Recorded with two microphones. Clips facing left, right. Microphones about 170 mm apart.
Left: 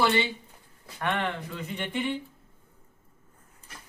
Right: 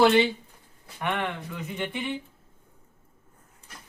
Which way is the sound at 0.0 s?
75° right (ahead or behind).